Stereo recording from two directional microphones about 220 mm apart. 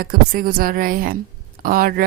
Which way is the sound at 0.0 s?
40° right (ahead or behind).